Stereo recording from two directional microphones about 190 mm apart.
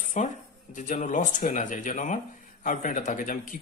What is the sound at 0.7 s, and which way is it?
Speech, 40° left (ahead or behind).